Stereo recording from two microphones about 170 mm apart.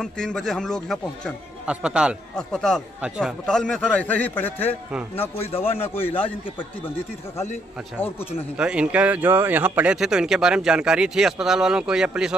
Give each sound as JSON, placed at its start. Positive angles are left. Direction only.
{"t": 0.0, "sound": "a man's voice", "side_deg": 5}
{"t": 5.3, "sound": "a man's voice", "side_deg": 35}
{"t": 5.8, "sound": "a man's voice", "side_deg": 15}
{"t": 8.5, "sound": "speech", "side_deg": -5}